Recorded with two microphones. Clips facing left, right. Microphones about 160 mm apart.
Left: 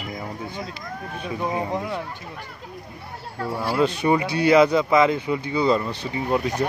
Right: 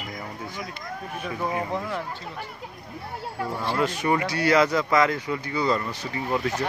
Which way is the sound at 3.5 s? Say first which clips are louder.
Left 5 dB; 10° left (ahead or behind).